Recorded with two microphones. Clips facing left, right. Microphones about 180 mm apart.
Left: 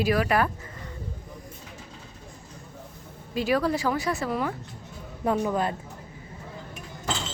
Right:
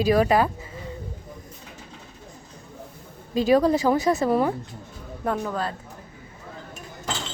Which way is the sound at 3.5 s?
20° right (ahead or behind).